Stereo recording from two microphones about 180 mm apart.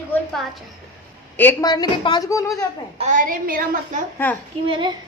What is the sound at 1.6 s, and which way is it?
A woman's voice, 25° left (ahead or behind).